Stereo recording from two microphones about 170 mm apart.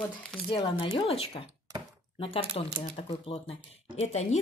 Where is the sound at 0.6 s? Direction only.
30° left (ahead or behind).